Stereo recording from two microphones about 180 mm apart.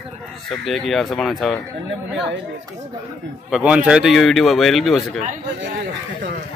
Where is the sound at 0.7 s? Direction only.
Centre (ahead or behind).